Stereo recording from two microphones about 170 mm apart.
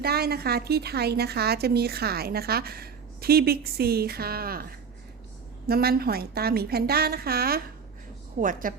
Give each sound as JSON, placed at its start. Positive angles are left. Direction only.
{"t": 0.0, "sound": "a woman's voice", "side_deg": -65}
{"t": 5.6, "sound": "a woman's voice", "side_deg": -65}
{"t": 8.4, "sound": "a woman's voice", "side_deg": -50}